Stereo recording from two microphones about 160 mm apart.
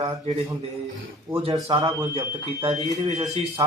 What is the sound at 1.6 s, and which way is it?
A man's voice, 30° right (ahead or behind).